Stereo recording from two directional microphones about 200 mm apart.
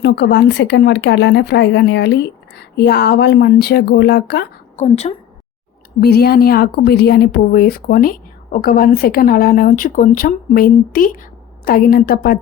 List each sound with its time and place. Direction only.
0.0 s speech: 60° left (ahead or behind)
4.8 s a woman's voice: 30° left (ahead or behind)
6.0 s a woman's voice: 50° left (ahead or behind)